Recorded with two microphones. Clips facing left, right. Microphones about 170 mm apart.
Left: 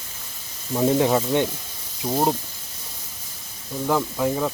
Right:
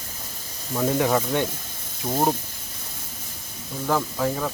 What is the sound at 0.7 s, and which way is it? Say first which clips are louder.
Speech: left 3 dB; 20° left (ahead or behind).